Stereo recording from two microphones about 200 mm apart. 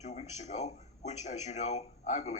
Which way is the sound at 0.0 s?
35° left (ahead or behind).